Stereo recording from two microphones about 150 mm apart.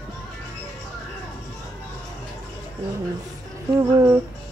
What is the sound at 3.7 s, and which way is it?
Music, 15° right (ahead or behind).